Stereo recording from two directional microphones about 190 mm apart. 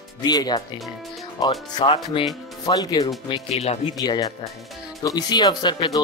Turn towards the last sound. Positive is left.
turn(degrees=25)  # may be behind; listen again after turning